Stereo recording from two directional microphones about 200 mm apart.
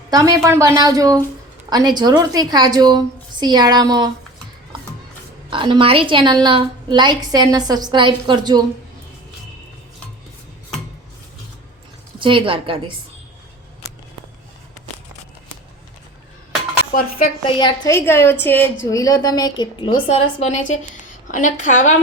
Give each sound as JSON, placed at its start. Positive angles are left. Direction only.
{"t": 0.1, "sound": "a woman's voice", "side_deg": -20}
{"t": 5.5, "sound": "a woman's voice", "side_deg": -25}
{"t": 12.2, "sound": "a woman's voice", "side_deg": -25}
{"t": 17.4, "sound": "a woman's voice", "side_deg": 20}